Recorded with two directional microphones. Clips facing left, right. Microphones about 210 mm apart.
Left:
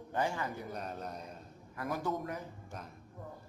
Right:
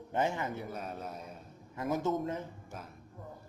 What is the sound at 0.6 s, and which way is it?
Speech, 5° right (ahead or behind).